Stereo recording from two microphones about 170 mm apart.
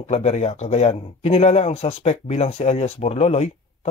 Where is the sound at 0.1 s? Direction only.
40° left (ahead or behind).